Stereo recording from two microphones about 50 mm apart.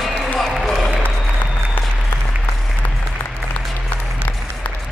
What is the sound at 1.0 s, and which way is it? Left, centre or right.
Applause, left.